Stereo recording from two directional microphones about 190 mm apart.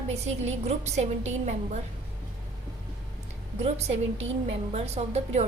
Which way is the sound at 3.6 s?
35° right (ahead or behind).